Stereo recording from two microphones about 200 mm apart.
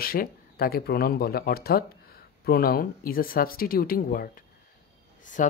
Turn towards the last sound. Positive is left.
turn(degrees=40)  # may be behind; listen again after turning